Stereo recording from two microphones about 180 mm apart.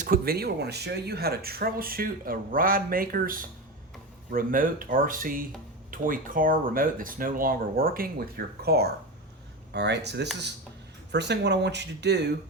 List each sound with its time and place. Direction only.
0.0 s speech: 55° right (ahead or behind)